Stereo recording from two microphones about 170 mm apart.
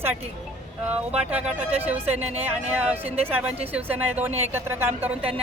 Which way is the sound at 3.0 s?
35° right (ahead or behind).